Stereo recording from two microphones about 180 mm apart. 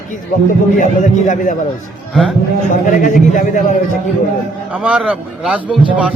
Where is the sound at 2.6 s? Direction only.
45° left (ahead or behind).